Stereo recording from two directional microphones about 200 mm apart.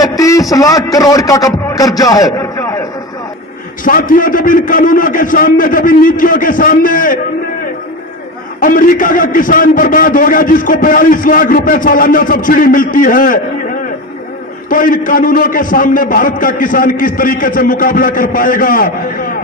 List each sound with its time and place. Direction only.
0.2 s a sound: 15° left (ahead or behind)
0.9 s a man's voice: 15° left (ahead or behind)
3.8 s a man's voice: 45° left (ahead or behind)
8.5 s a man's voice: 45° left (ahead or behind)
14.7 s a man's voice: 45° left (ahead or behind)